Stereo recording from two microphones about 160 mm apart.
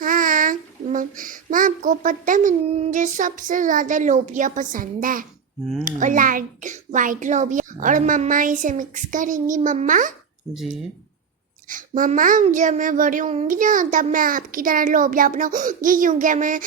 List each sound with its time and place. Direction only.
0.0 s child singing: 60° right (ahead or behind)
0.9 s a child's voice: 55° right (ahead or behind)
11.7 s a child's voice: 55° right (ahead or behind)